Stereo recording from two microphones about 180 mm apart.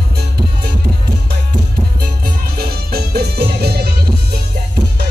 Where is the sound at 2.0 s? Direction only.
60° right (ahead or behind).